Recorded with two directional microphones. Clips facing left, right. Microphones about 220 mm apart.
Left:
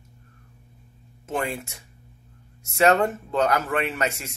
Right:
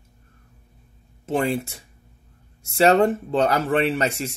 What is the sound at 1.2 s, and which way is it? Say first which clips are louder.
Speech: right 6 dB; 30° right (ahead or behind).